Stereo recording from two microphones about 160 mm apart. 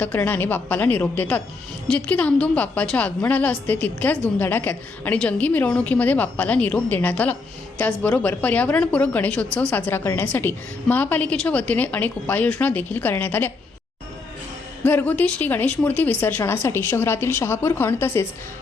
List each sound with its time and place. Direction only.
0.0 s a woman's voice: 10° left (ahead or behind)
14.8 s a woman's voice: 10° left (ahead or behind)